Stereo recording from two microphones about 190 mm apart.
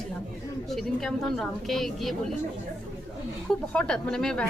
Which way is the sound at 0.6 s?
Centre (ahead or behind).